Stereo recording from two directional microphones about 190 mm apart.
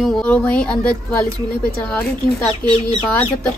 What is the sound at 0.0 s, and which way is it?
Speech, 5° left (ahead or behind).